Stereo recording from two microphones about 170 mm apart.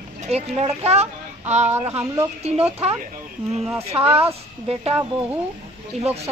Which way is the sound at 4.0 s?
35° right (ahead or behind).